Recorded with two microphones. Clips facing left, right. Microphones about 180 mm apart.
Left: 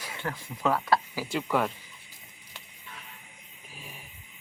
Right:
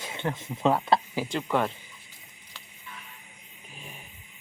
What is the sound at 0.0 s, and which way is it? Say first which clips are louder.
Speech: right 4 dB; 25° right (ahead or behind).